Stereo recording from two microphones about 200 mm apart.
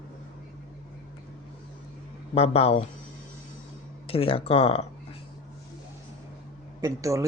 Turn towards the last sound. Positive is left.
turn(degrees=-15)  # may be behind; listen again after turning